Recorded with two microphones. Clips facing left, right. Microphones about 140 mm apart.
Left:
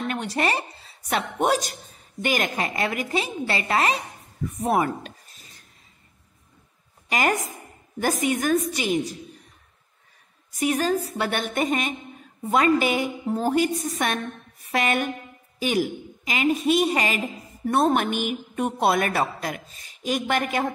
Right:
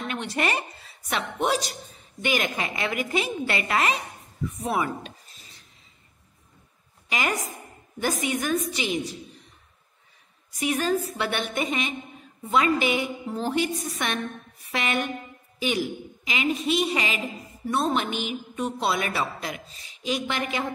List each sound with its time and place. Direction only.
0.1 s a woman's voice: 40° left (ahead or behind)
4.5 s a sound: 45° left (ahead or behind)
7.1 s a woman's voice: 45° left (ahead or behind)
10.5 s a woman's voice: 40° left (ahead or behind)
17.6 s a woman's voice: 55° left (ahead or behind)